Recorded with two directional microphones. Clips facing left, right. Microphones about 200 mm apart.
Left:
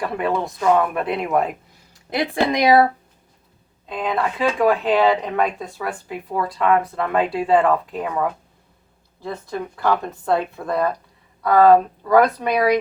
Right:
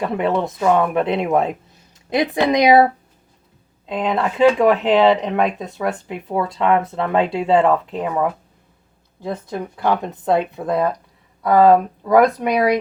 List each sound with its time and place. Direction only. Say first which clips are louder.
0.0 s speech: right 3 dB; 25° right (ahead or behind)
3.8 s speech: right 2 dB; 25° right (ahead or behind)
9.8 s speech: right 2 dB; 20° right (ahead or behind)